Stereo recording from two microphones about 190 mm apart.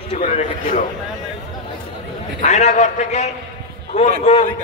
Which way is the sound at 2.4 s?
35° left (ahead or behind).